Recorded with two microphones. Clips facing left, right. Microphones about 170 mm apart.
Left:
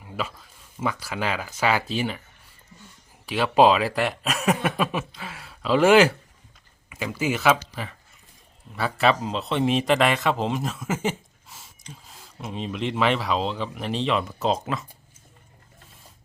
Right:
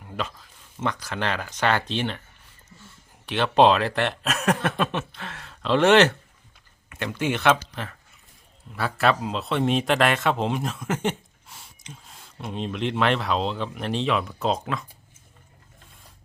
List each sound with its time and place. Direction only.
0.0 s speech: 5° left (ahead or behind)
3.2 s speech: 5° left (ahead or behind)